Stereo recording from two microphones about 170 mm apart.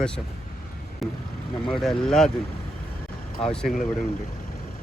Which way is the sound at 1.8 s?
Centre (ahead or behind).